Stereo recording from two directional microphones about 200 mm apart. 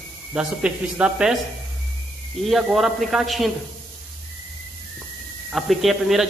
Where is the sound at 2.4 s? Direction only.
Centre (ahead or behind).